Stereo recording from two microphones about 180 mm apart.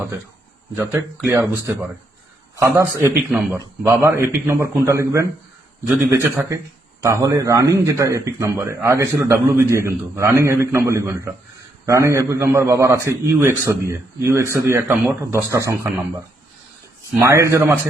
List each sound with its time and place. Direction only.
0.8 s a man's voice: 15° right (ahead or behind)
17.2 s a man's voice: 15° right (ahead or behind)